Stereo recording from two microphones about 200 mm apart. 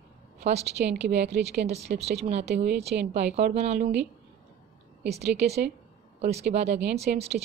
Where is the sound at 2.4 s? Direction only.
55° right (ahead or behind).